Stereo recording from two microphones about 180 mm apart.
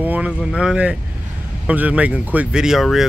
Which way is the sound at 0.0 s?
10° right (ahead or behind).